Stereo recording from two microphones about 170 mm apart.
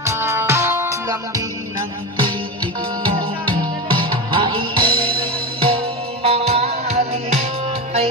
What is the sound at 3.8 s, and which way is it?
Music, 25° right (ahead or behind).